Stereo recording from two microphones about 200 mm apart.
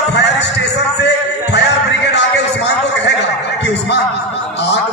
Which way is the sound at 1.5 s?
60° left (ahead or behind).